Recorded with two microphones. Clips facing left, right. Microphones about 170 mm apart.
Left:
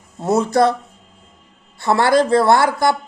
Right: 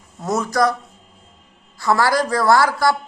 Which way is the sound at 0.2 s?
30° left (ahead or behind).